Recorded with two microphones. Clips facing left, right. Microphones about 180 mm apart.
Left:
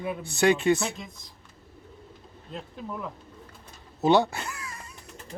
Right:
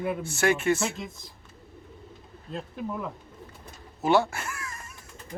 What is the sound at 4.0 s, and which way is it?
Speech, 20° left (ahead or behind).